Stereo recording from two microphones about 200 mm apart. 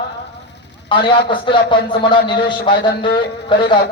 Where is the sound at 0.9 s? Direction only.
25° left (ahead or behind).